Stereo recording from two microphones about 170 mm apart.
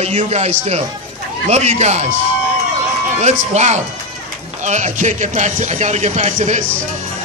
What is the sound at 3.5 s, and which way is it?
Speech, 45° right (ahead or behind).